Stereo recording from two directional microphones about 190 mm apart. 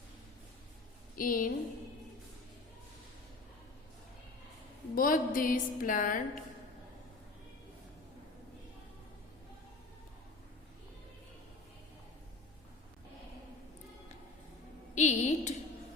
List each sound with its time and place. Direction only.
1.1 s a woman's voice: 45° left (ahead or behind)
4.9 s a woman's voice: 45° left (ahead or behind)
14.9 s a woman's voice: 40° left (ahead or behind)